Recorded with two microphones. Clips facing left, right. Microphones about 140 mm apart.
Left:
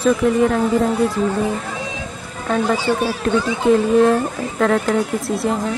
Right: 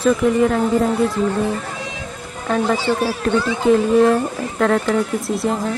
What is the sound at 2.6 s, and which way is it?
Speech, 10° left (ahead or behind).